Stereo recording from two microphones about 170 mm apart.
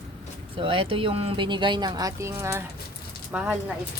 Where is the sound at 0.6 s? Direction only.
30° right (ahead or behind); by 3.6 s 10° right (ahead or behind).